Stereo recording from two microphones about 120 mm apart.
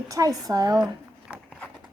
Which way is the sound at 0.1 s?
30° right (ahead or behind).